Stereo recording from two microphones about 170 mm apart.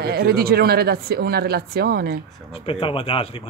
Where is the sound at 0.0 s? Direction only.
65° right (ahead or behind).